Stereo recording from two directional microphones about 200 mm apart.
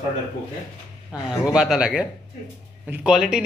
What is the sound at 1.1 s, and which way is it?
Speech, 5° right (ahead or behind).